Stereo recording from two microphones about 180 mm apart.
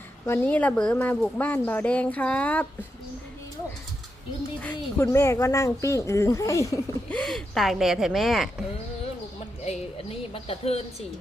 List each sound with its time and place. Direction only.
0.3 s speech: 10° left (ahead or behind)
4.6 s speech: 15° left (ahead or behind)
7.1 s speech: 5° left (ahead or behind)
9.6 s speech: 35° left (ahead or behind)